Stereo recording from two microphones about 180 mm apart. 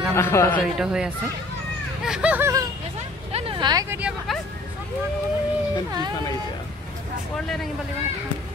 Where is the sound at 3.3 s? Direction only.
30° right (ahead or behind).